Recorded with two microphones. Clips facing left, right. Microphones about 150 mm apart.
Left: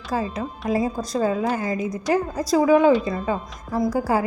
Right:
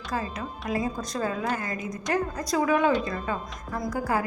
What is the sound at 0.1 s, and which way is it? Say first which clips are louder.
A woman's voice: left 6 dB; 30° left (ahead or behind).